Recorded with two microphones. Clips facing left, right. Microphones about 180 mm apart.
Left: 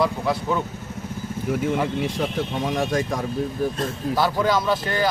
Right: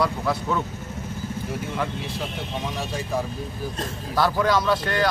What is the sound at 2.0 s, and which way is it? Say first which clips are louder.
Speech: left 7 dB; 50° left (ahead or behind).